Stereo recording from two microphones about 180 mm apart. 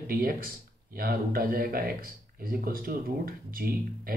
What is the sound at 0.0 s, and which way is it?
Speech, 55° right (ahead or behind).